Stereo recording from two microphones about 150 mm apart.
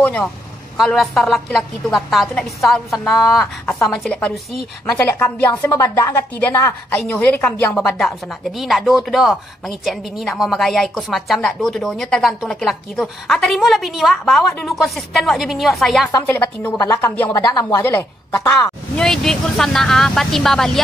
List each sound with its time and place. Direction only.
0.0 s a woman's voice: 10° left (ahead or behind)
16.1 s speech: 25° left (ahead or behind)
17.8 s a woman's voice: 15° left (ahead or behind)
18.9 s a woman's voice: 5° left (ahead or behind)